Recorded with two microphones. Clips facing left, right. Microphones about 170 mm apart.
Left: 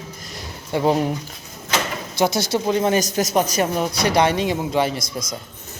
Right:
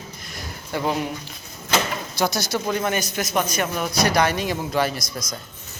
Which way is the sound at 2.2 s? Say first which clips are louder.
Left 4 dB; 25° left (ahead or behind).